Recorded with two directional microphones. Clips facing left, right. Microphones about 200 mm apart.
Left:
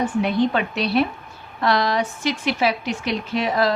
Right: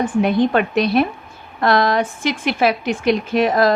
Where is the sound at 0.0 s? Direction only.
50° right (ahead or behind).